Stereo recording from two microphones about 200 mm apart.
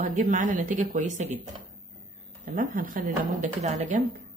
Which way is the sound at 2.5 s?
45° right (ahead or behind).